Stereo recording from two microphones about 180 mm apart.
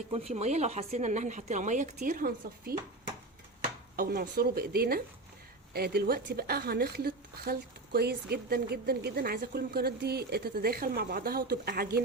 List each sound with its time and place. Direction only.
0.1 s a woman's voice: 35° right (ahead or behind)
2.0 s a woman's voice: 55° right (ahead or behind)
3.6 s chopping: 55° right (ahead or behind)
5.7 s a woman's voice: 60° right (ahead or behind)